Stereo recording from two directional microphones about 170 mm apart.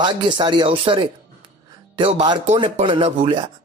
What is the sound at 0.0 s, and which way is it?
A man's voice, 25° right (ahead or behind).